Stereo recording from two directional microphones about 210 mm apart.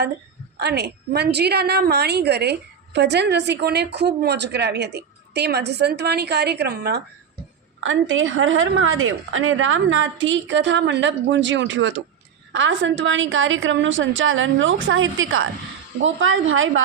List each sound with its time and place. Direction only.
0.5 s a woman's voice: 50° right (ahead or behind)
7.8 s a woman's voice: 65° right (ahead or behind)